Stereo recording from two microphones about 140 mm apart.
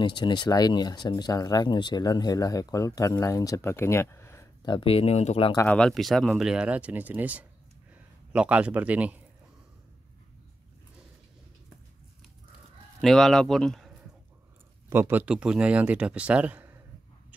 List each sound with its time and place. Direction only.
0.0 s speech: 35° left (ahead or behind)
4.6 s speech: 40° left (ahead or behind)
5.7 s speech: 5° left (ahead or behind)
13.0 s speech: centre (ahead or behind)
14.9 s speech: 15° right (ahead or behind)